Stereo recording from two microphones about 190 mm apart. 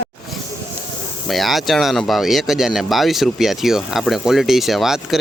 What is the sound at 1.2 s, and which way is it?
Speech, centre (ahead or behind).